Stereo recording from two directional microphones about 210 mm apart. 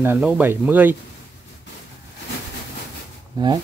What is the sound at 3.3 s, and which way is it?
Speech, 20° right (ahead or behind).